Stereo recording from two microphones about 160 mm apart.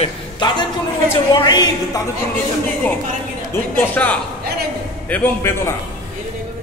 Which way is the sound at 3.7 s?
10° left (ahead or behind).